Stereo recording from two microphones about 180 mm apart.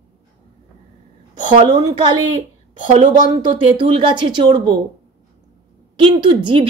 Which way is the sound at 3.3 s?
30° right (ahead or behind).